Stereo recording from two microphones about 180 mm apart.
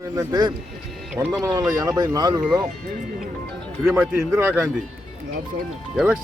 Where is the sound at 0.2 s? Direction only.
25° right (ahead or behind).